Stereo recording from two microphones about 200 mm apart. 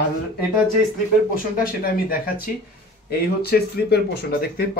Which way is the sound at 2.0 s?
45° left (ahead or behind).